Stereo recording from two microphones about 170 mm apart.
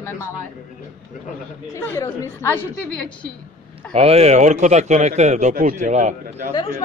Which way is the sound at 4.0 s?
35° right (ahead or behind).